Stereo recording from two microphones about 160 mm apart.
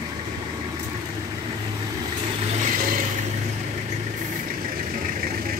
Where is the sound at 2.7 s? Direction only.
60° right (ahead or behind).